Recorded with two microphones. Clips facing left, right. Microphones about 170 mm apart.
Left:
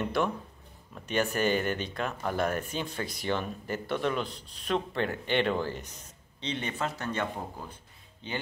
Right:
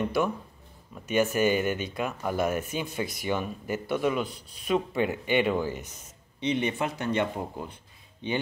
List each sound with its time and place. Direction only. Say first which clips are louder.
0.0 s speech: right 2 dB; 5° right (ahead or behind)